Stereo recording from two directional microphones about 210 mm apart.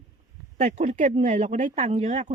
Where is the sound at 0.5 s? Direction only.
30° right (ahead or behind).